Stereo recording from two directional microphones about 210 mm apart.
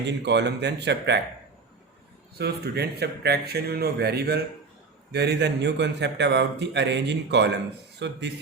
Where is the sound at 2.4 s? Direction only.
50° right (ahead or behind).